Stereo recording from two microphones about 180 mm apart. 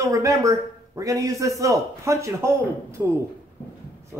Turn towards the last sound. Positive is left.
turn(degrees=-15)  # may be behind; listen again after turning